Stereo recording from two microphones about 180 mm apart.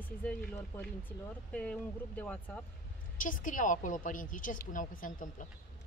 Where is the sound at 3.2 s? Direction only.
50° left (ahead or behind).